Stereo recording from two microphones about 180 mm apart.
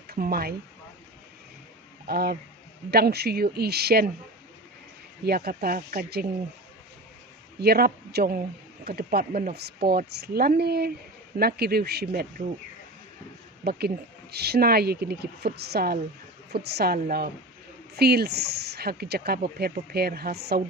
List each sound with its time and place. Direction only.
0.1 s speech: 55° right (ahead or behind)
2.0 s speech: 60° right (ahead or behind)
5.2 s speech: 60° right (ahead or behind)
7.6 s speech: 60° right (ahead or behind)
13.7 s speech: 60° right (ahead or behind)